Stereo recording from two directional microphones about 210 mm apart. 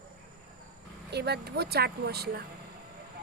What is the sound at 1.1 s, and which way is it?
Speech, 50° right (ahead or behind).